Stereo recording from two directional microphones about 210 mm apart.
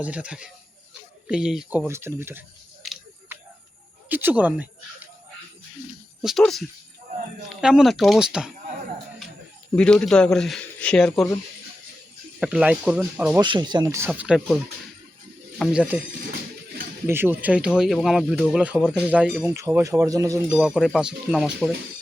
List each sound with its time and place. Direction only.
0.0 s speech: 5° right (ahead or behind)
2.8 s a sound: centre (ahead or behind)
4.1 s speech: 10° right (ahead or behind)
6.2 s speech: centre (ahead or behind)
9.7 s speech: 5° left (ahead or behind)
12.4 s speech: 5° right (ahead or behind)
13.4 s speech: 20° right (ahead or behind)
14.1 s speech: 5° right (ahead or behind)
17.1 s speech: 10° right (ahead or behind)
19.5 s speech: 15° right (ahead or behind)
20.6 s speech: centre (ahead or behind)